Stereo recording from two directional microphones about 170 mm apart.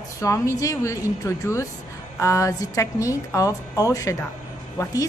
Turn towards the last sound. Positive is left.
turn(degrees=20)  # may be behind; listen again after turning